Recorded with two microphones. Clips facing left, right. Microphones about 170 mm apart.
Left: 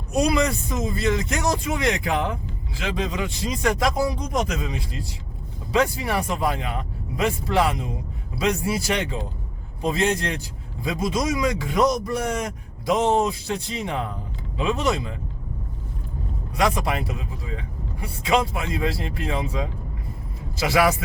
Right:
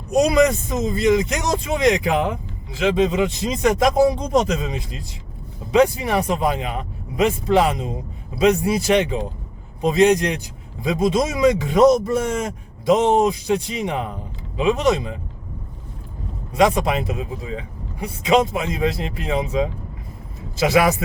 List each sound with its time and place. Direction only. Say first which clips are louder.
0.1 s a man's voice: right 5 dB; 20° right (ahead or behind)
16.6 s speech: right 5 dB; 20° right (ahead or behind)